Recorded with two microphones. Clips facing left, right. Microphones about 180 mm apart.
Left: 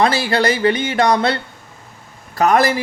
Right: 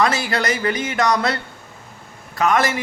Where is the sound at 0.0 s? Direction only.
30° left (ahead or behind).